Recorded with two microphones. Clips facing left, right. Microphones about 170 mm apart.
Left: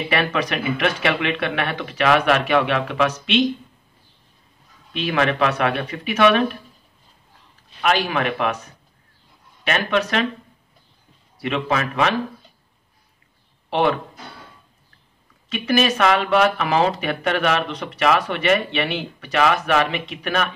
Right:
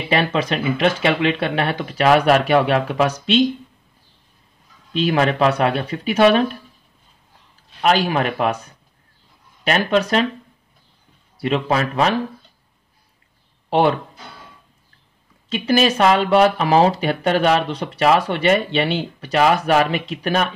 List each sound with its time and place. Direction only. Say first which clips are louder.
0.1 s speech: right 4 dB; 30° right (ahead or behind)
4.9 s speech: right 3 dB; 35° right (ahead or behind)
7.8 s speech: right 3 dB; 35° right (ahead or behind)
9.7 s speech: right 3 dB; 35° right (ahead or behind)
11.4 s speech: right 3 dB; 35° right (ahead or behind)
13.7 s speech: right 3 dB; 35° right (ahead or behind)
15.5 s speech: right 2 dB; 30° right (ahead or behind)